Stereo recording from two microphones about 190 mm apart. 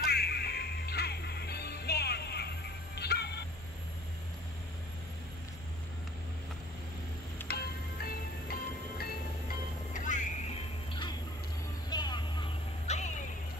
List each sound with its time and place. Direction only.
0.0 s music: 60° left (ahead or behind)
7.4 s music: 55° left (ahead or behind)
9.9 s music: 40° left (ahead or behind)
10.9 s a sound: 25° left (ahead or behind)
11.9 s vehicle: 20° left (ahead or behind)
12.8 s a sound: 35° left (ahead or behind)